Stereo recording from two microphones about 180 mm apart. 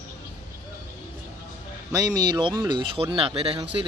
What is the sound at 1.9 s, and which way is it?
Speech, 20° right (ahead or behind).